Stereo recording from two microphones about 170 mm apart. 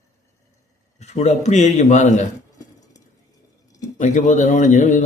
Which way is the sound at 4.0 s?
45° left (ahead or behind).